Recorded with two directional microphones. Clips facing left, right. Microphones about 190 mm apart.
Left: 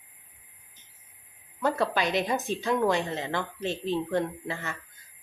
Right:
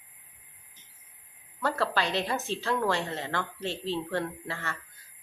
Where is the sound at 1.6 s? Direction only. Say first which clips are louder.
Left 2 dB; 15° left (ahead or behind).